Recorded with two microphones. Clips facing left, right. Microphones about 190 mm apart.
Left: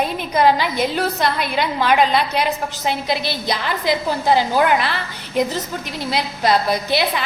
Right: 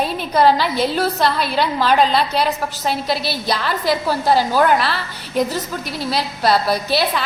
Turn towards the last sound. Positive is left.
turn(degrees=20)  # may be behind; listen again after turning